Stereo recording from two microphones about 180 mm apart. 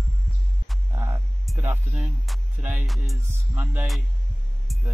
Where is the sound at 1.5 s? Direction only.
10° right (ahead or behind).